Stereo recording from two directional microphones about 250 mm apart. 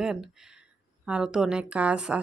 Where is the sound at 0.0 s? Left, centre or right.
Centre.